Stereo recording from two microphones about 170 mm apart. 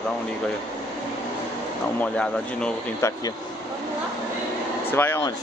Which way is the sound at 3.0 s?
15° left (ahead or behind).